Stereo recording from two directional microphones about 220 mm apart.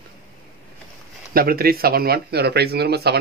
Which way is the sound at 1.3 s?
40° right (ahead or behind).